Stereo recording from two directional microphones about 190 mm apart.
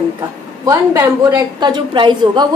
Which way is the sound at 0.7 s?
15° right (ahead or behind).